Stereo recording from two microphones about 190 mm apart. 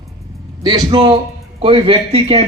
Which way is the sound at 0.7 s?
25° right (ahead or behind).